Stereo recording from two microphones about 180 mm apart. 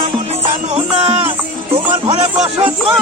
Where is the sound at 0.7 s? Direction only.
35° right (ahead or behind).